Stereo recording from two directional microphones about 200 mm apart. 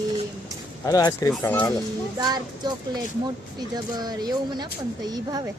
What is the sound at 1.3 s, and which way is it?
Speech, 10° left (ahead or behind).